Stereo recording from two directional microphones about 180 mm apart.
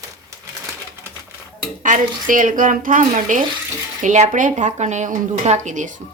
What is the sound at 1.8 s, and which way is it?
Speech, 45° right (ahead or behind).